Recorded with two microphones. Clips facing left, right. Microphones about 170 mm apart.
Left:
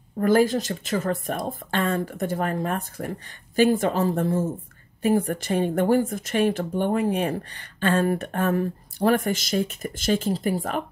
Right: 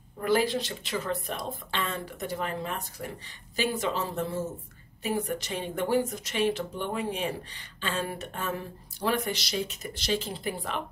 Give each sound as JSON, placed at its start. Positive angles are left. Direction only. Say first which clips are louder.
{"t": 0.2, "sound": "speech", "louder": "left 6 dB", "side_deg": 45}